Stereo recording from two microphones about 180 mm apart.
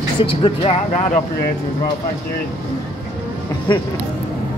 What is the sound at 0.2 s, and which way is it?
Speech, 30° left (ahead or behind).